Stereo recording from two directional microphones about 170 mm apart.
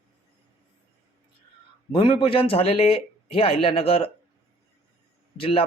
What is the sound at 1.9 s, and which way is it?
Speech, 30° left (ahead or behind).